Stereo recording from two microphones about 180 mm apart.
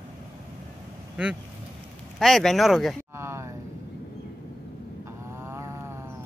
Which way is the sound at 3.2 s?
15° right (ahead or behind).